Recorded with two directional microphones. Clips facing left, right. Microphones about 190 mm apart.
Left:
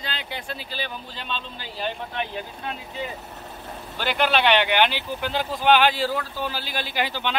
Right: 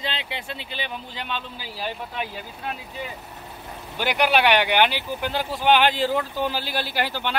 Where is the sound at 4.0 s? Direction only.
15° right (ahead or behind).